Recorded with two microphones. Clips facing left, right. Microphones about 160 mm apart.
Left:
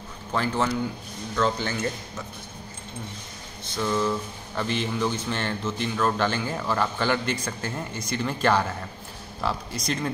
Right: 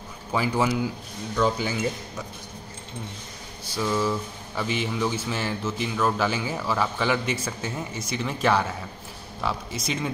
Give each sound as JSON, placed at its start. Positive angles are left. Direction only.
{"t": 0.3, "sound": "speech", "side_deg": -10}
{"t": 3.7, "sound": "speech", "side_deg": -5}